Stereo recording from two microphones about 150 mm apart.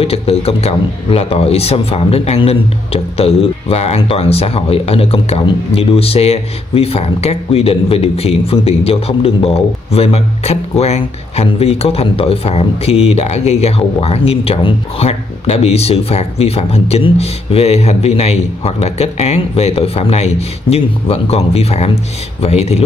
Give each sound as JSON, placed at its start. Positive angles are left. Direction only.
{"t": 0.0, "sound": "a man's voice", "side_deg": 40}